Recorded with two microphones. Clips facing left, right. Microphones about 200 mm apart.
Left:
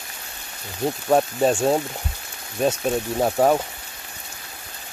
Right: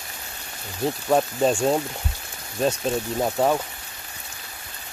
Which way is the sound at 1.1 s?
5° left (ahead or behind).